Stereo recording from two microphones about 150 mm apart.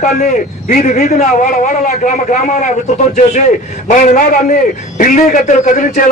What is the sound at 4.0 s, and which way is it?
A man's voice, 55° left (ahead or behind).